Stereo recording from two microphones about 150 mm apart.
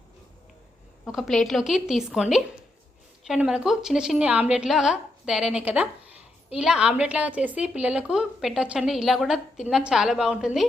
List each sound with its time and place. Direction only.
1.0 s a woman's voice: centre (ahead or behind)